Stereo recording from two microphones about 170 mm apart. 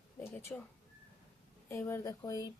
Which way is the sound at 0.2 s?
10° left (ahead or behind).